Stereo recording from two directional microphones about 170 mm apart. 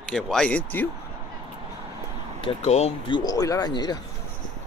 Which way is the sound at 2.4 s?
35° left (ahead or behind).